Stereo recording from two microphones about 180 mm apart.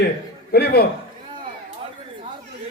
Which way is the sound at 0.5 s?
60° left (ahead or behind).